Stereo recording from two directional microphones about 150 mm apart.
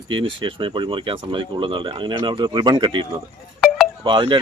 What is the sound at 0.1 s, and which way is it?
Speech, 35° right (ahead or behind).